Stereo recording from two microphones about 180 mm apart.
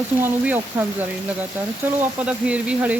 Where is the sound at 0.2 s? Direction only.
10° right (ahead or behind).